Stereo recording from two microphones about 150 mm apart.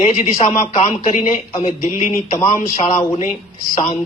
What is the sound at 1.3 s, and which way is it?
Speech, 40° left (ahead or behind).